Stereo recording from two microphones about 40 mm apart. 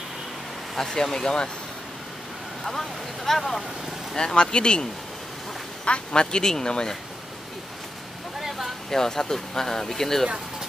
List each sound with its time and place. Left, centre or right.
0.7 s speech: centre
2.6 s speech: centre
4.1 s speech: centre
5.9 s speech: left
8.4 s a sound: centre
8.9 s speech: centre